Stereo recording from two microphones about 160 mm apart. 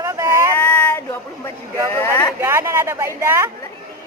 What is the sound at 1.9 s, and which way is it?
Speech, 15° left (ahead or behind).